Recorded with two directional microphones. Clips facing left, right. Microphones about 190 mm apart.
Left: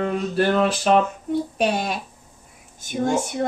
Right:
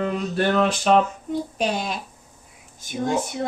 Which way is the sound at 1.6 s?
55° left (ahead or behind).